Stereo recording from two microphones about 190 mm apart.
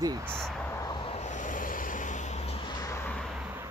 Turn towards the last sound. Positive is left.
turn(degrees=10)  # may be behind; listen again after turning